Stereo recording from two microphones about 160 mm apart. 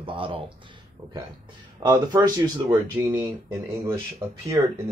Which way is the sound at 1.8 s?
25° right (ahead or behind).